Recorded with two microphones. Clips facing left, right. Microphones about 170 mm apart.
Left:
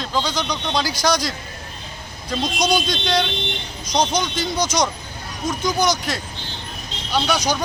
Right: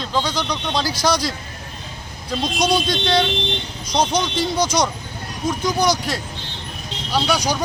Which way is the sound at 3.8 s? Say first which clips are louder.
Right 1 dB; 30° right (ahead or behind).